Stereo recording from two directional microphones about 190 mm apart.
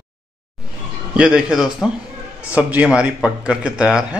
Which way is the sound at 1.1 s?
5° right (ahead or behind).